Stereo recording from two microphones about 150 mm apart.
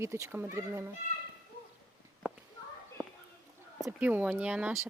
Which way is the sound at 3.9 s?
10° right (ahead or behind).